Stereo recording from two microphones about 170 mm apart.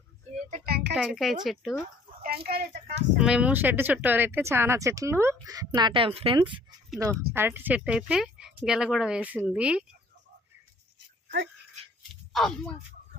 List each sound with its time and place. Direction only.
0.6 s music: 70° right (ahead or behind)
0.9 s speech: centre (ahead or behind)
2.2 s speech: 65° right (ahead or behind)
3.2 s speech: 5° right (ahead or behind); by 6.6 s 30° right (ahead or behind)
7.0 s speech: 15° right (ahead or behind)
12.3 s speech: centre (ahead or behind)